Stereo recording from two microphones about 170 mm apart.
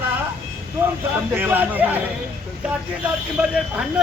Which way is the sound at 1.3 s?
10° right (ahead or behind).